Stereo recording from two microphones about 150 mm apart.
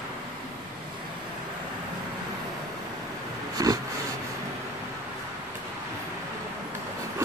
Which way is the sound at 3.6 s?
20° right (ahead or behind).